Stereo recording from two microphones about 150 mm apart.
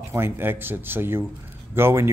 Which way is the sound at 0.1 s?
15° right (ahead or behind).